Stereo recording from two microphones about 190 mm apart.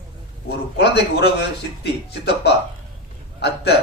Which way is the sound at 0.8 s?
60° left (ahead or behind).